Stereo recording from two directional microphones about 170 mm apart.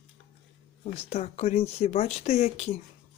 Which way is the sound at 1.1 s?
40° left (ahead or behind).